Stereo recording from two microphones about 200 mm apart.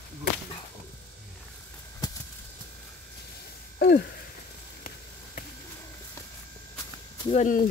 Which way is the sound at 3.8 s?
55° left (ahead or behind).